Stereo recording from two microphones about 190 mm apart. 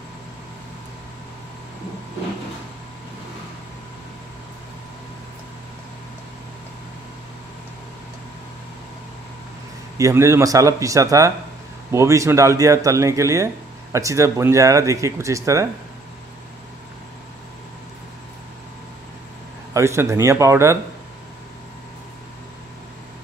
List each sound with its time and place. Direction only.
9.9 s speech: 15° right (ahead or behind)
19.7 s speech: 15° right (ahead or behind)